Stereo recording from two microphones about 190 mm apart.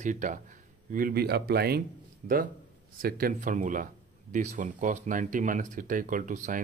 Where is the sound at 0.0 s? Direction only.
40° right (ahead or behind).